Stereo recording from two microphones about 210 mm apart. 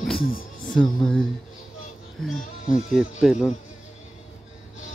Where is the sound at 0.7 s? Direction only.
5° left (ahead or behind).